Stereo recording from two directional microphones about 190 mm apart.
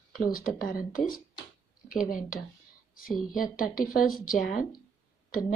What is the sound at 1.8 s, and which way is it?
Speech, 45° left (ahead or behind).